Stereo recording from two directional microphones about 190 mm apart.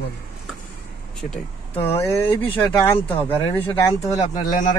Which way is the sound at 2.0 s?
10° left (ahead or behind).